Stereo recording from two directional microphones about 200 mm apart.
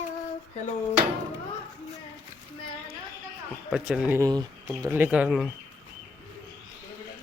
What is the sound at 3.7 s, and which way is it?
Speech, 5° right (ahead or behind).